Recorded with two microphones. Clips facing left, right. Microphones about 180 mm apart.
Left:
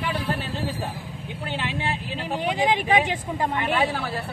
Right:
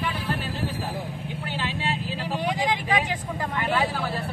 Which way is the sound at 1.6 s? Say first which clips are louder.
Even; 20° left (ahead or behind).